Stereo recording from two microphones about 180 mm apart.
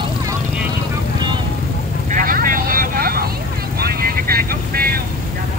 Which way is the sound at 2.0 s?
50° right (ahead or behind).